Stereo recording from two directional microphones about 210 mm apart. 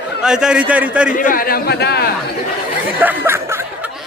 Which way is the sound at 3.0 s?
10° right (ahead or behind).